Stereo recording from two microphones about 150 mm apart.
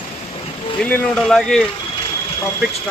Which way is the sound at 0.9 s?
10° left (ahead or behind).